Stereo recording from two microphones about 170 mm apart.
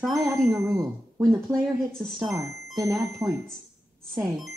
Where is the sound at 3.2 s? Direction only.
20° right (ahead or behind).